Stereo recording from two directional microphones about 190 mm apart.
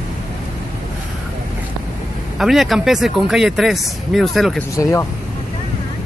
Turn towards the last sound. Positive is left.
turn(degrees=15)  # may be behind; listen again after turning